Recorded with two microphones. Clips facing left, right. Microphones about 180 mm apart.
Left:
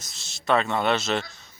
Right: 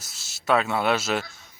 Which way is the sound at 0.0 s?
5° right (ahead or behind).